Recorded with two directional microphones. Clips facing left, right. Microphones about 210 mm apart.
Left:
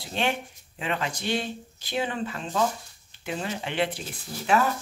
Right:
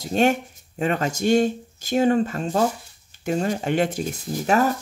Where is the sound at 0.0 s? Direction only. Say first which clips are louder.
Right 8 dB; 45° right (ahead or behind).